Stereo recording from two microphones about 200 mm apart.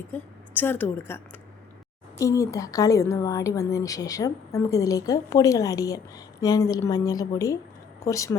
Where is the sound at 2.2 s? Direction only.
15° left (ahead or behind).